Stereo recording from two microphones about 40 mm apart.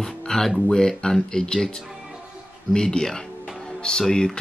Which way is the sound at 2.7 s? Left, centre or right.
Centre.